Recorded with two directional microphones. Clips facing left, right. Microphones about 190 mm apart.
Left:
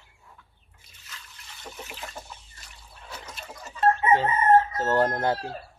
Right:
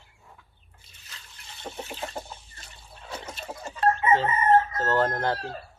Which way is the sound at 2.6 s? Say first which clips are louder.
Right 2 dB; 30° right (ahead or behind).